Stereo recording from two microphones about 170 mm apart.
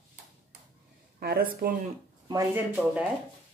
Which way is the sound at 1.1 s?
65° right (ahead or behind).